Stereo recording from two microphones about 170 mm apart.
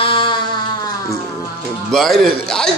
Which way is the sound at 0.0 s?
30° left (ahead or behind).